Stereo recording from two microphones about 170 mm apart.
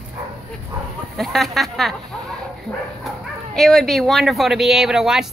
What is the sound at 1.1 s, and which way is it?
Speech, centre (ahead or behind).